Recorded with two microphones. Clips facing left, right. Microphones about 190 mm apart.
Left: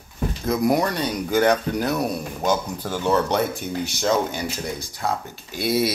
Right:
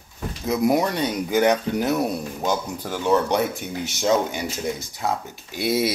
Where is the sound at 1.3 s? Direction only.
15° right (ahead or behind).